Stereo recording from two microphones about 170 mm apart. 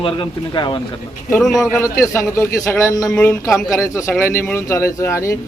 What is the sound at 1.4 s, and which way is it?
Speech, centre (ahead or behind).